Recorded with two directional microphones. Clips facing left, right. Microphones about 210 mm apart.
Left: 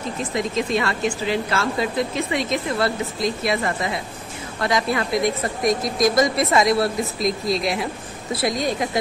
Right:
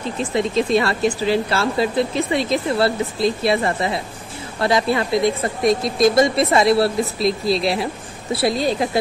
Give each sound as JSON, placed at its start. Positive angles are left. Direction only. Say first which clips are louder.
{"t": 0.2, "sound": "speech", "louder": "right 5 dB", "side_deg": -30}